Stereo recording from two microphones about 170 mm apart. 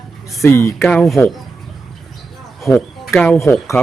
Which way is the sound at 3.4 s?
15° left (ahead or behind).